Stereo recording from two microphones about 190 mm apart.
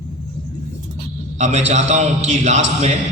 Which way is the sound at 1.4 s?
35° right (ahead or behind).